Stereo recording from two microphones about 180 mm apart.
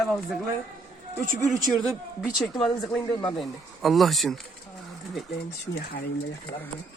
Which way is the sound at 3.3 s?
Centre (ahead or behind).